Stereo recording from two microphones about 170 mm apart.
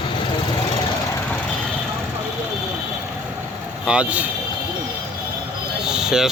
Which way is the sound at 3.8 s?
5° right (ahead or behind).